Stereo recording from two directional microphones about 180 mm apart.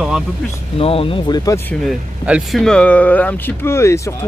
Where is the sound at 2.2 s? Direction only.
5° right (ahead or behind).